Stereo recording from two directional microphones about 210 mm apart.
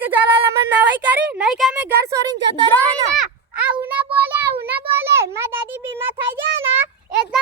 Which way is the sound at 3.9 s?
5° right (ahead or behind).